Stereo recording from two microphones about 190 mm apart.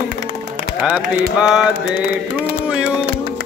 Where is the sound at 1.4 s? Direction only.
5° right (ahead or behind).